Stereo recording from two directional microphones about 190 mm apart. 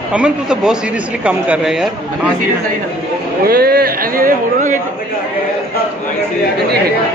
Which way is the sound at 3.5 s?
55° right (ahead or behind).